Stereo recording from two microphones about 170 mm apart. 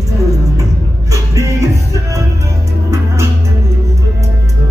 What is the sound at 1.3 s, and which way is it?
Music, 15° right (ahead or behind).